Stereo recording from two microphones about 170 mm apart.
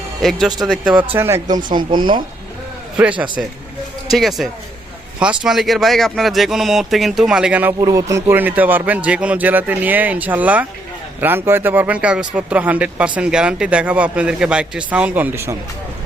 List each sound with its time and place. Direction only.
0.2 s speech: centre (ahead or behind)
1.1 s speech: 15° right (ahead or behind)
3.0 s speech: 10° right (ahead or behind)
7.8 s speech: 20° right (ahead or behind)